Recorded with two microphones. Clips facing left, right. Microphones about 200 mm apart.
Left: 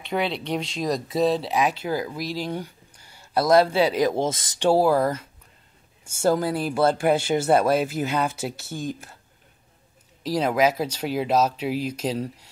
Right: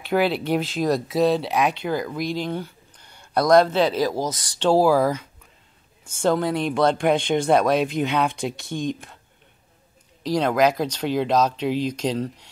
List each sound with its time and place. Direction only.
0.0 s speech: 5° right (ahead or behind); by 4.6 s 25° left (ahead or behind)
4.6 s speech: 5° left (ahead or behind)
10.2 s speech: 5° left (ahead or behind)